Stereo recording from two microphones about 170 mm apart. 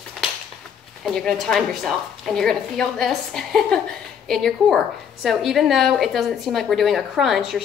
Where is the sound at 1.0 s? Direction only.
Centre (ahead or behind).